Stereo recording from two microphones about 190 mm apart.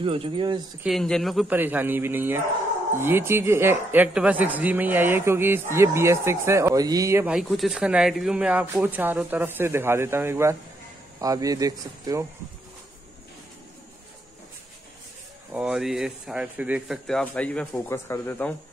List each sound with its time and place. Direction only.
0.0 s speech: 30° right (ahead or behind)
0.8 s speech: centre (ahead or behind); by 7.3 s 15° right (ahead or behind)
7.3 s speech: centre (ahead or behind); by 12.3 s 20° right (ahead or behind)
15.5 s speech: 5° right (ahead or behind)